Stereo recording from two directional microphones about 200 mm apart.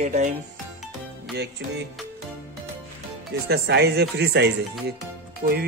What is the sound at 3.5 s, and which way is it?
Speech, 55° right (ahead or behind).